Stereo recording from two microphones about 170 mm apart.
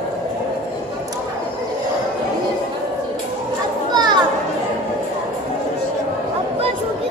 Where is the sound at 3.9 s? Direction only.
25° right (ahead or behind).